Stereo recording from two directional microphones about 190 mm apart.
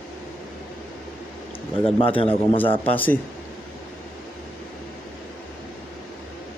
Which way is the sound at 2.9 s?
10° left (ahead or behind).